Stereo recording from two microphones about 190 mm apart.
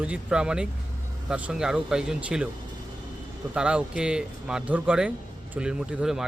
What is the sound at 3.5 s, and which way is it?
Speech, 5° right (ahead or behind).